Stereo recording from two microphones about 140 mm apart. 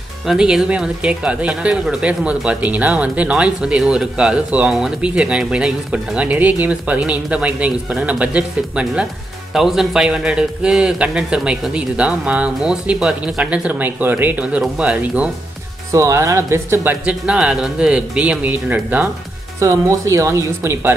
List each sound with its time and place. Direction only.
0.3 s speech: 5° right (ahead or behind)
15.9 s speech: 20° right (ahead or behind)